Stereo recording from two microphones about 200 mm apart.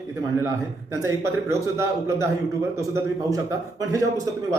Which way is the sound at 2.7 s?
15° right (ahead or behind).